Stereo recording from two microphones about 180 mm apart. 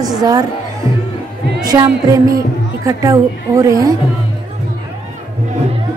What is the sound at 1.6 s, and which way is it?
A woman's voice, 20° right (ahead or behind).